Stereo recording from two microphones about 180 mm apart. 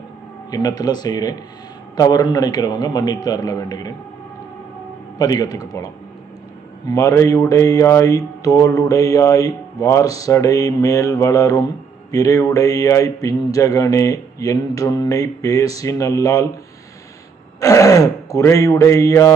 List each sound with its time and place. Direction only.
0.5 s speech: 20° left (ahead or behind)
5.1 s speech: 20° left (ahead or behind)
17.6 s speech: 20° left (ahead or behind)